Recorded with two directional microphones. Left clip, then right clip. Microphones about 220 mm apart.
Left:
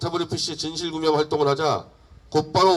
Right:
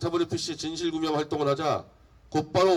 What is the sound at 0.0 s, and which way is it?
A man's voice, 30° right (ahead or behind).